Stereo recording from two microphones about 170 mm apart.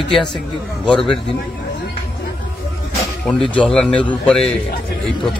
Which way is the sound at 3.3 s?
5° left (ahead or behind).